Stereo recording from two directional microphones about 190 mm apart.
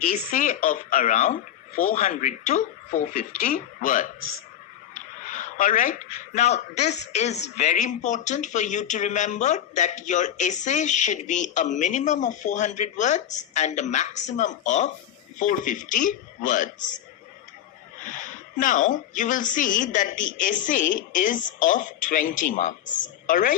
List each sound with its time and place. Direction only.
0.1 s speech: 40° left (ahead or behind)
18.1 s speech: 45° left (ahead or behind)